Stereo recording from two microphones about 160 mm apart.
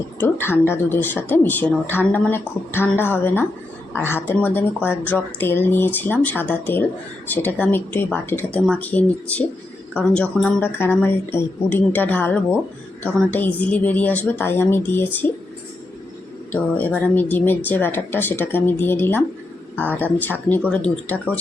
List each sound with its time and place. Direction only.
0.2 s a woman's voice: 15° left (ahead or behind)
16.5 s a woman's voice: 10° left (ahead or behind)